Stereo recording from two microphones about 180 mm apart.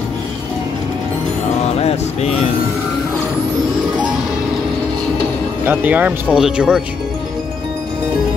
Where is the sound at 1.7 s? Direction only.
35° left (ahead or behind).